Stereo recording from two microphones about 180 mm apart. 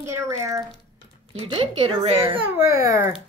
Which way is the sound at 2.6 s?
15° right (ahead or behind).